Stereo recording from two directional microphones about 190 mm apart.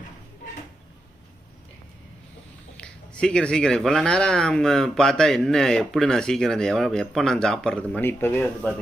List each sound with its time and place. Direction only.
2.7 s speech: 5° left (ahead or behind)